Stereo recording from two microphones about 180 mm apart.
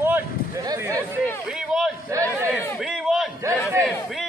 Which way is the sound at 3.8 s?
Centre (ahead or behind).